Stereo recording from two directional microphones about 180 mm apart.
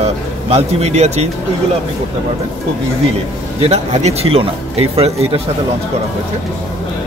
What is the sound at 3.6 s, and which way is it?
Speech, 35° right (ahead or behind).